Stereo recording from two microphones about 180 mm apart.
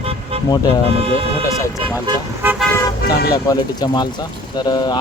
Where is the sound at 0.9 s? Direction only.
30° right (ahead or behind).